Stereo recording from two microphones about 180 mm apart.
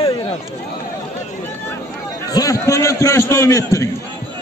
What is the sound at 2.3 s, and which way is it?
A man's voice, 20° left (ahead or behind).